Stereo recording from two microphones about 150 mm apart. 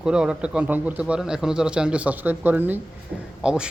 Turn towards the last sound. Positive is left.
turn(degrees=-5)  # may be behind; listen again after turning